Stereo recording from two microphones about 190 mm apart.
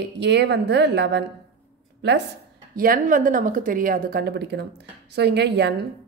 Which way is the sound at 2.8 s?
45° right (ahead or behind).